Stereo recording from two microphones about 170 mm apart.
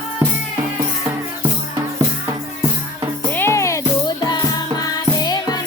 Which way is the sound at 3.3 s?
15° left (ahead or behind).